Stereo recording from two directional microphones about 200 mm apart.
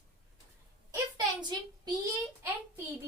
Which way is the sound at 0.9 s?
20° right (ahead or behind).